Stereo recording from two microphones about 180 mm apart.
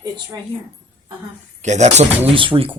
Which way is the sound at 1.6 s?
40° right (ahead or behind).